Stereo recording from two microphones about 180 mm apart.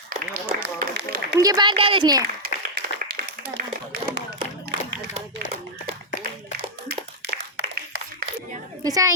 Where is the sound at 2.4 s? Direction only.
55° right (ahead or behind).